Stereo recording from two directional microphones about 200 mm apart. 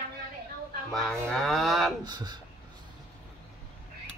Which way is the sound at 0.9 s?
Centre (ahead or behind).